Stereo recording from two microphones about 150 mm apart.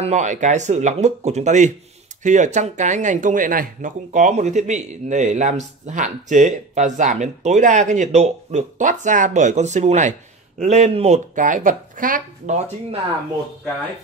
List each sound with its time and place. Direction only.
0.0 s speech: 55° right (ahead or behind)
11.3 s speech: 60° right (ahead or behind)